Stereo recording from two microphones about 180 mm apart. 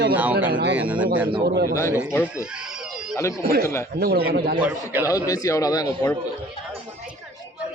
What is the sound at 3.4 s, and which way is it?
Speech, 55° right (ahead or behind).